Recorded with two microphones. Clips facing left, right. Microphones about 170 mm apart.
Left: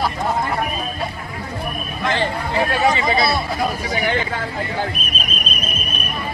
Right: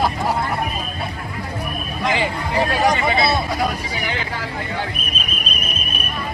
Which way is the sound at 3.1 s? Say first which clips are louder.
Even; 25° right (ahead or behind).